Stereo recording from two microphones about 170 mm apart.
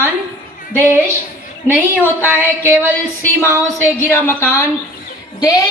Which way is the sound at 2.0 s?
15° left (ahead or behind).